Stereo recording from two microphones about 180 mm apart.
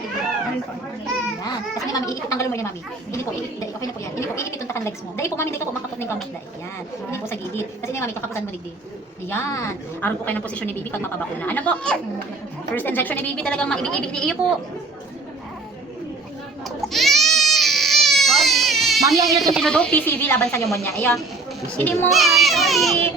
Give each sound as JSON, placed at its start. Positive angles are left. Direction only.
{"t": 1.9, "sound": "a woman's voice", "side_deg": 20}
{"t": 3.8, "sound": "a woman's voice", "side_deg": 15}
{"t": 16.9, "sound": "baby cry", "side_deg": 0}
{"t": 19.1, "sound": "speech", "side_deg": -20}
{"t": 19.5, "sound": "a woman's voice", "side_deg": 5}
{"t": 22.1, "sound": "speech", "side_deg": 0}